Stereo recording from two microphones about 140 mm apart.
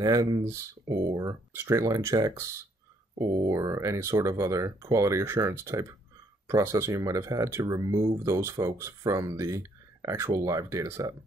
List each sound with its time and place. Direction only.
0.0 s speech: 25° right (ahead or behind)